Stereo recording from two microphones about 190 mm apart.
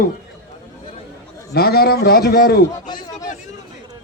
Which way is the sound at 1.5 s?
55° left (ahead or behind).